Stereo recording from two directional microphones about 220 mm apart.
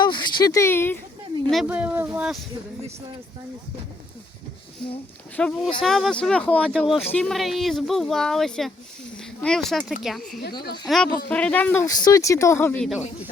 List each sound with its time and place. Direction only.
0.0 s speech: 20° left (ahead or behind)
1.5 s speech: 5° right (ahead or behind)
5.4 s speech: 5° left (ahead or behind)
9.1 s a sound: 5° left (ahead or behind)
10.0 s speech: centre (ahead or behind)